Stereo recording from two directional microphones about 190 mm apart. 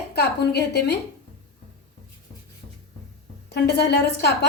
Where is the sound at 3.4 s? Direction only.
60° left (ahead or behind).